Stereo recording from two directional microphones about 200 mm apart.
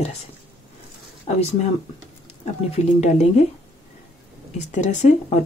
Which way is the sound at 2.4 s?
35° left (ahead or behind).